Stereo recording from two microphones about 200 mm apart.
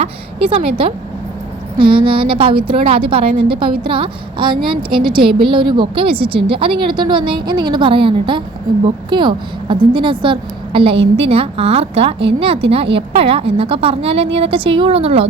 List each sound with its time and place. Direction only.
0.0 s a woman's voice: 25° right (ahead or behind)